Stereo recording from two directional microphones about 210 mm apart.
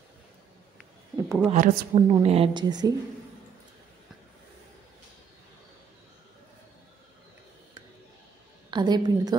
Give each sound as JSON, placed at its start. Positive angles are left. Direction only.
{"t": 1.1, "sound": "a sound", "side_deg": -10}
{"t": 1.5, "sound": "a woman's voice", "side_deg": -30}
{"t": 8.6, "sound": "a woman's voice", "side_deg": -20}